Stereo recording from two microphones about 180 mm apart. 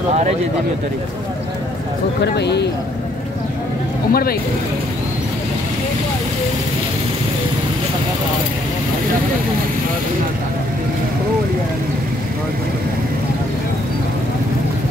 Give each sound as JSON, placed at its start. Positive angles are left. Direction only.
{"t": 2.2, "sound": "speech", "side_deg": 70}
{"t": 4.1, "sound": "speech", "side_deg": 55}